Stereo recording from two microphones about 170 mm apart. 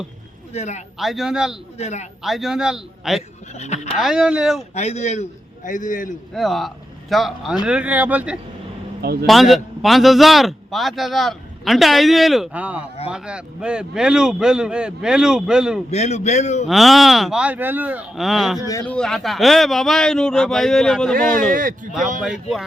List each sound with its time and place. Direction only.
0.5 s a man's voice: 40° left (ahead or behind)
0.9 s a man's voice: centre (ahead or behind)
1.8 s a man's voice: 40° left (ahead or behind)
2.2 s a man's voice: centre (ahead or behind)
3.5 s a man's voice: 40° left (ahead or behind)
3.9 s a man's voice: 5° right (ahead or behind)
4.7 s a man's voice: 40° left (ahead or behind)
6.3 s a man's voice: centre (ahead or behind)
15.9 s a man's voice: 40° left (ahead or behind)
16.6 s a man's voice: centre (ahead or behind)
18.7 s speech: 15° left (ahead or behind)
18.9 s a man's voice: centre (ahead or behind)
21.2 s speech: 55° right (ahead or behind)
22.2 s a man's voice: centre (ahead or behind)